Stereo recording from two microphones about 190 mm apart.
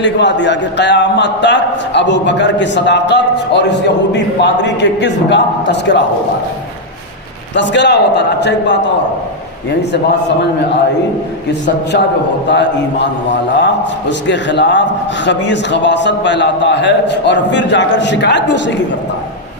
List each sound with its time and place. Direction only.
0.0 s a man's voice: 65° left (ahead or behind)
7.5 s a man's voice: 70° left (ahead or behind)
12.5 s a man's voice: 65° left (ahead or behind)